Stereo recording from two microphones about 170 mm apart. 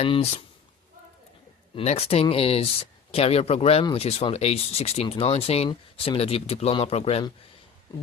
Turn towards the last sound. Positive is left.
turn(degrees=35)  # may be behind; listen again after turning